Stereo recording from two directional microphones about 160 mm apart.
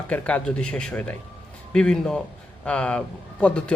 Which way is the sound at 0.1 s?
10° left (ahead or behind).